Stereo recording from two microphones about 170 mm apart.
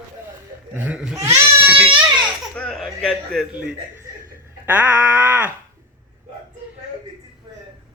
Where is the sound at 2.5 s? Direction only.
5° left (ahead or behind).